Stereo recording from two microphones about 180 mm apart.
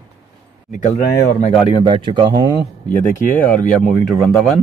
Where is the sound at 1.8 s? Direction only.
30° right (ahead or behind).